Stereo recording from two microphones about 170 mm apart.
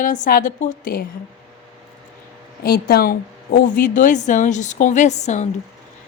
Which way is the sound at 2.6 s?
65° left (ahead or behind).